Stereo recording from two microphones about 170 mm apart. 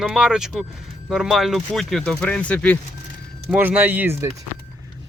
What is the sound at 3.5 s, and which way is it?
Speech, 10° right (ahead or behind).